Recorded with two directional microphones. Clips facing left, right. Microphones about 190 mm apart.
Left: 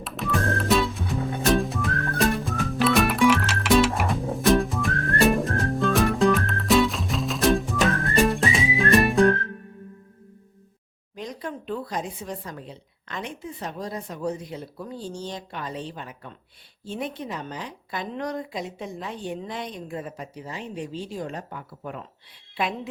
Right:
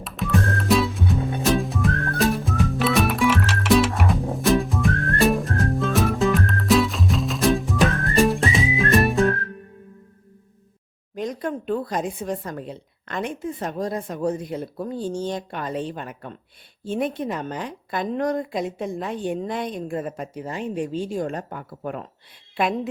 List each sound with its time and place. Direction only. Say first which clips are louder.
0.0 s music: right 3 dB; centre (ahead or behind)
11.1 s a woman's voice: right 7 dB; 50° right (ahead or behind)